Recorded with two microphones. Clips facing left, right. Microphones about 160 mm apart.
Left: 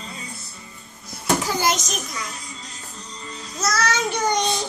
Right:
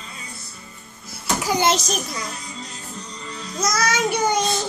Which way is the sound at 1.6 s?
30° right (ahead or behind).